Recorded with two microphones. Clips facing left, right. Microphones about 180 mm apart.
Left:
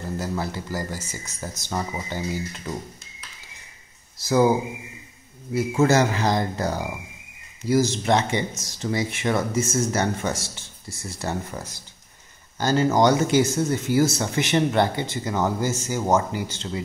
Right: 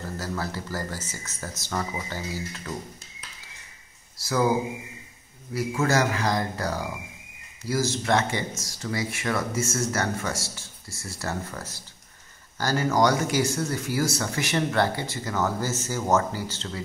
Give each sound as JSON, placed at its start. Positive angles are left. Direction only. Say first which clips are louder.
{"t": 0.0, "sound": "speech", "louder": "left 3 dB", "side_deg": 15}
{"t": 4.2, "sound": "speech", "louder": "left 6 dB", "side_deg": 20}
{"t": 5.5, "sound": "speech", "louder": "left 5 dB", "side_deg": 25}